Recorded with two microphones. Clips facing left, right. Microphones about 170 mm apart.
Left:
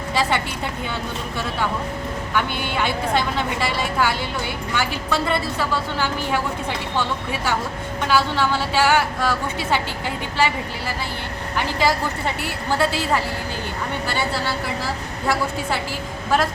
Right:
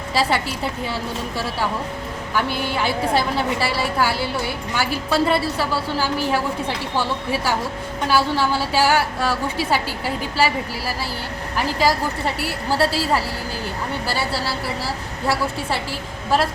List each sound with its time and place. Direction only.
0.1 s a woman's voice: 35° right (ahead or behind)
2.3 s a woman's voice: 35° right (ahead or behind)
8.0 s a woman's voice: 40° right (ahead or behind)